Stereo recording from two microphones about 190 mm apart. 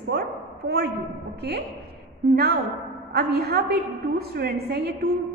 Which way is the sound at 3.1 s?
60° right (ahead or behind).